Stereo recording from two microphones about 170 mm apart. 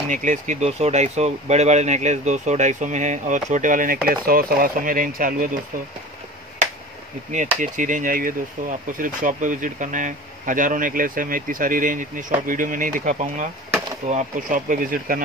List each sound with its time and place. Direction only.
0.1 s speech: 45° right (ahead or behind)
7.3 s speech: 50° right (ahead or behind)